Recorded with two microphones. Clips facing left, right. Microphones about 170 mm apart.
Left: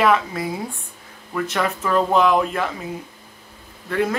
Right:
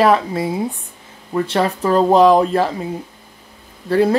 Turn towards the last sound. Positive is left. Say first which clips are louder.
# right 7 dB
turn(degrees=-35)  # may be behind; listen again after turning